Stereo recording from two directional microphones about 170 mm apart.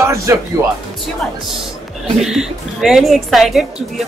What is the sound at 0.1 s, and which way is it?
Speech, 15° right (ahead or behind).